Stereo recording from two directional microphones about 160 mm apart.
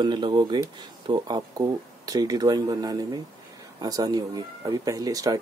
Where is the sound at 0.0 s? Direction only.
25° right (ahead or behind).